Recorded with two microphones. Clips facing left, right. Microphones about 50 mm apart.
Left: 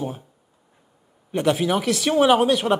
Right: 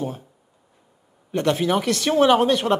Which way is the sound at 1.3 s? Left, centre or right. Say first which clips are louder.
Even; centre.